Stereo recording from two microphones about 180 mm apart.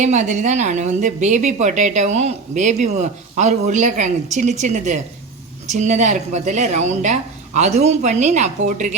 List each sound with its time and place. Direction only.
0.0 s a woman's voice: 40° right (ahead or behind)